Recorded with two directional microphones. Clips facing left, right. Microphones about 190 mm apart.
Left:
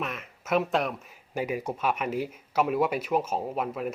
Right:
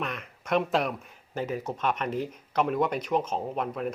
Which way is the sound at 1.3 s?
10° left (ahead or behind).